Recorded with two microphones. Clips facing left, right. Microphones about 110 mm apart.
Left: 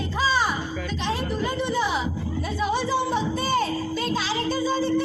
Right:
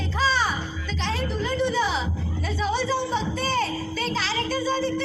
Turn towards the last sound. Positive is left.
turn(degrees=10)  # may be behind; listen again after turning